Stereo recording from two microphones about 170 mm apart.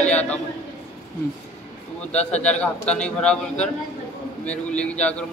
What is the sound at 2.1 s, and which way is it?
A man's voice, 5° left (ahead or behind).